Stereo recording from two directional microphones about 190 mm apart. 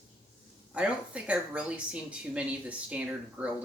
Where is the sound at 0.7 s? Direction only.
5° right (ahead or behind).